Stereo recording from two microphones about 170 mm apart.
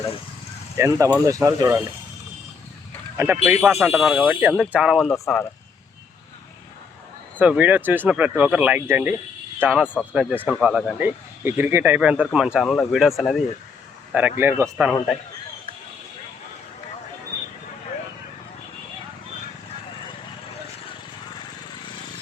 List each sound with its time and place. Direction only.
0.8 s speech: 20° right (ahead or behind)
3.2 s speech: 15° right (ahead or behind); by 5.5 s centre (ahead or behind)
7.3 s speech: 10° right (ahead or behind)